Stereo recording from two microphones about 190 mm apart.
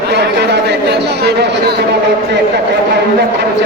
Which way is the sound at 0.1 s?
60° right (ahead or behind).